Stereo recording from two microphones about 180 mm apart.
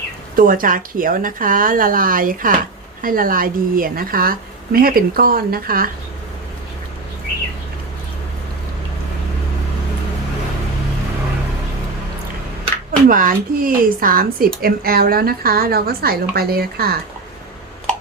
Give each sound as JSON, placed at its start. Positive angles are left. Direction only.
{"t": 0.3, "sound": "a woman's voice", "side_deg": -50}
{"t": 13.1, "sound": "speech", "side_deg": -50}